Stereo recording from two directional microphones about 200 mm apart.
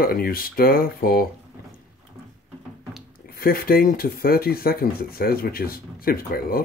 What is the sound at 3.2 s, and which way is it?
Speech, 50° left (ahead or behind).